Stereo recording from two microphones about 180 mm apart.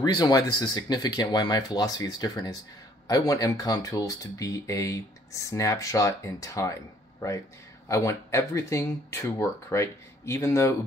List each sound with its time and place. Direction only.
0.0 s speech: 20° left (ahead or behind)